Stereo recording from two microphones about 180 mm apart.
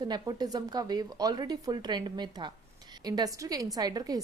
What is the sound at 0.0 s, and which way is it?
A woman's voice, 20° right (ahead or behind).